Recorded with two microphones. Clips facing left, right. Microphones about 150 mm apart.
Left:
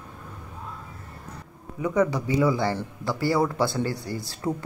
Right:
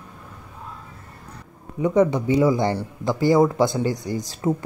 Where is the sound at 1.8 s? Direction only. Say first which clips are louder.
Right 5 dB; 25° right (ahead or behind).